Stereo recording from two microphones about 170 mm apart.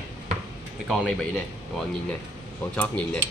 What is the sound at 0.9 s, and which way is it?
Speech, 5° left (ahead or behind).